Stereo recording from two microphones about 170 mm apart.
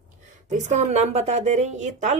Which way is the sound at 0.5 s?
45° right (ahead or behind).